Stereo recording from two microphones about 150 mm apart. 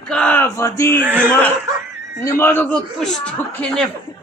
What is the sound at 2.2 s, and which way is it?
Speech, 15° left (ahead or behind).